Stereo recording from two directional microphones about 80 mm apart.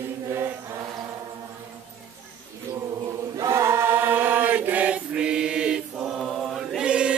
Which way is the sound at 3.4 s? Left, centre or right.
Right.